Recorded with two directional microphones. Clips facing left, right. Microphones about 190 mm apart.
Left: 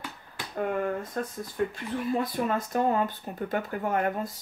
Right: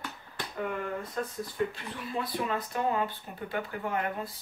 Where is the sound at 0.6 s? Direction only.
45° left (ahead or behind).